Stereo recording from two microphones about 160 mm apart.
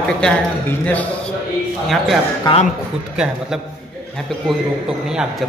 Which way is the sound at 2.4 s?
30° left (ahead or behind).